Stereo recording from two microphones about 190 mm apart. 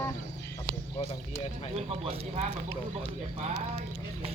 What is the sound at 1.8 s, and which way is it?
Speech, 30° right (ahead or behind).